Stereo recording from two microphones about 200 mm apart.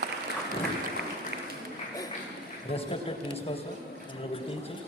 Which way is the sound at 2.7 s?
30° left (ahead or behind).